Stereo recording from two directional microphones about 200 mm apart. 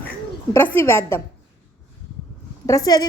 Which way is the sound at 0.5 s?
10° left (ahead or behind).